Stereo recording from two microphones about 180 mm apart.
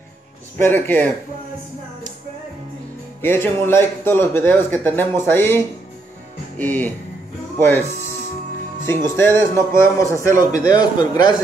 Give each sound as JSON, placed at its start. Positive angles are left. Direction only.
{"t": 0.6, "sound": "speech", "side_deg": 10}
{"t": 3.2, "sound": "speech", "side_deg": 10}
{"t": 6.6, "sound": "a man's voice", "side_deg": 10}